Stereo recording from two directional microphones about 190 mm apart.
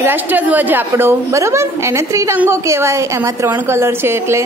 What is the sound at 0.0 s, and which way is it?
A woman's voice, 10° right (ahead or behind).